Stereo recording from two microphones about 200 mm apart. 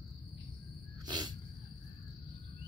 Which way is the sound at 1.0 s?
20° right (ahead or behind).